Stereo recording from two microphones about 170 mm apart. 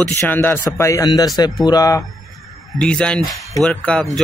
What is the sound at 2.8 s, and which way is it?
Speech, 5° left (ahead or behind).